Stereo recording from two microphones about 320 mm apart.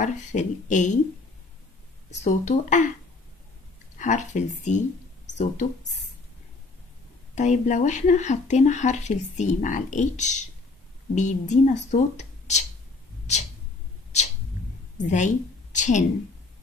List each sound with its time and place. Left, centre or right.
0.0 s speech: left
2.0 s speech: left
4.0 s speech: left
7.3 s speech: left
13.3 s a sound: left
15.0 s a woman's voice: left